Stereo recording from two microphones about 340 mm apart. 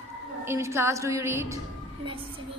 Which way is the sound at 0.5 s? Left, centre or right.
Centre.